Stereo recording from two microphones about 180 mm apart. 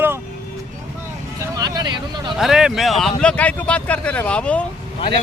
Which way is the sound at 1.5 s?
20° right (ahead or behind).